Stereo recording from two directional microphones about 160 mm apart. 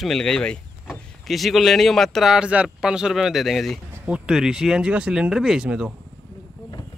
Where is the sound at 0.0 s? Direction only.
5° left (ahead or behind).